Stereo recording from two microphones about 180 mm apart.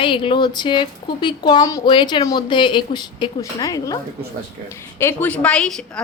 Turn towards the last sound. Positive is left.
turn(degrees=5)  # may be behind; listen again after turning